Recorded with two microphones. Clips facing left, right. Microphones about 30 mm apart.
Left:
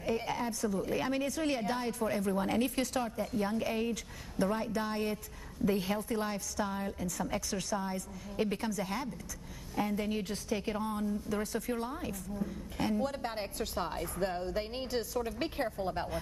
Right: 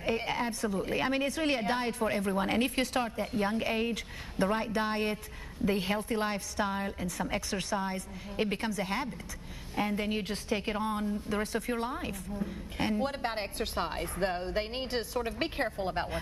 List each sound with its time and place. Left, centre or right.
0.0 s a woman's voice: right